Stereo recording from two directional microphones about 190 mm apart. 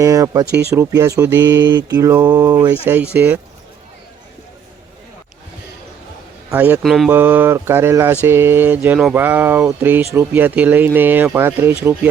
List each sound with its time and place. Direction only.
0.0 s speech: 20° right (ahead or behind)
6.5 s speech: 10° right (ahead or behind)